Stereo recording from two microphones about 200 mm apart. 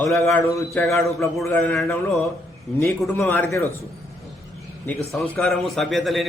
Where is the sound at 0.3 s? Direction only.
10° left (ahead or behind).